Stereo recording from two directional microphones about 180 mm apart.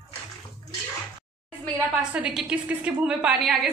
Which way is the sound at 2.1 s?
5° right (ahead or behind).